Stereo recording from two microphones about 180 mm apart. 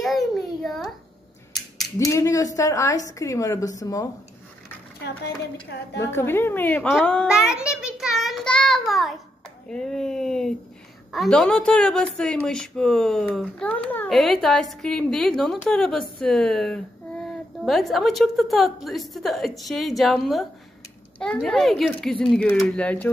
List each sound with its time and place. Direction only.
0.0 s a sound: centre (ahead or behind)
2.0 s a woman's voice: 20° left (ahead or behind)
5.9 s a child's voice: 15° left (ahead or behind)